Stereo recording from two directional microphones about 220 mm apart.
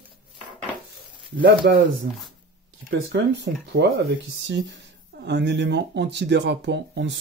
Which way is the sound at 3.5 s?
45° right (ahead or behind).